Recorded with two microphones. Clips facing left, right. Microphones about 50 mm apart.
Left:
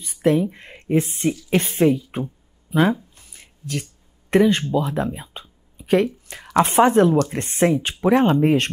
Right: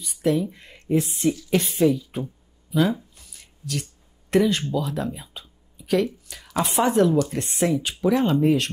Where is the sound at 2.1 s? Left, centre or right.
Left.